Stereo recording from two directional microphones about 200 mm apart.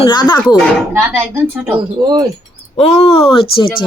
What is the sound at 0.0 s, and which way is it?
Speech, 20° left (ahead or behind).